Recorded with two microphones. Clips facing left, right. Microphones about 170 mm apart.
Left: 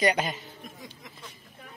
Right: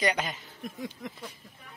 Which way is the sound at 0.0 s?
35° left (ahead or behind).